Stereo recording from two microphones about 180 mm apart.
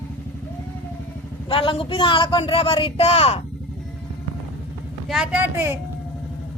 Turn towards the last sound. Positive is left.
turn(degrees=-10)  # may be behind; listen again after turning